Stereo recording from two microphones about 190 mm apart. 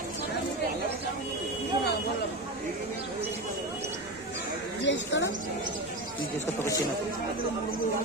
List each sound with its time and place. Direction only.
4.8 s speech: 70° left (ahead or behind)